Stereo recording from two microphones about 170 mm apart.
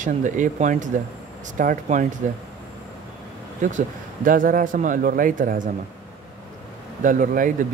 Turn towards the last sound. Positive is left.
turn(degrees=-55)  # may be behind; listen again after turning